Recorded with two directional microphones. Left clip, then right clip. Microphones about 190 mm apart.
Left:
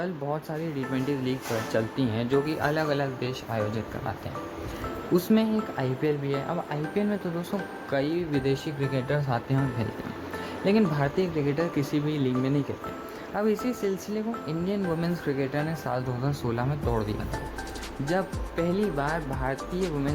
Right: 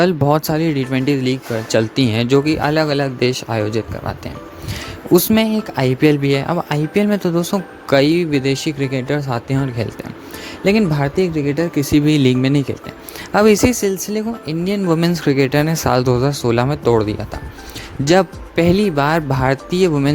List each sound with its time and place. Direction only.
0.0 s speech: 60° right (ahead or behind)
5.1 s speech: 55° right (ahead or behind)